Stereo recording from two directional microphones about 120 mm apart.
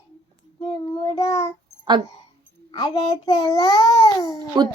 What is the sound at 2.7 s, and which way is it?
A child's voice, 40° left (ahead or behind).